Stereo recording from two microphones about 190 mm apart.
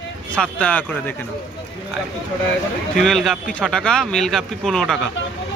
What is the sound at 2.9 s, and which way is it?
Speech, centre (ahead or behind).